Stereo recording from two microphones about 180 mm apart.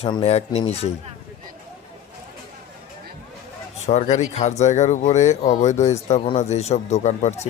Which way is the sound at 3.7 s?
35° left (ahead or behind).